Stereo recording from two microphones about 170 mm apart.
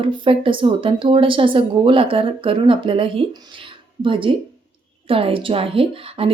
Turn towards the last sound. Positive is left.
turn(degrees=-35)  # may be behind; listen again after turning